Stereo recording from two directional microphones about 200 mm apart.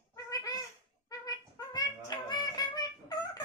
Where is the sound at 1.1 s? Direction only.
20° left (ahead or behind).